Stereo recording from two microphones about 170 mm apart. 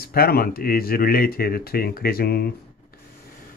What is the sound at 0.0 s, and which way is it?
Speech, 65° left (ahead or behind).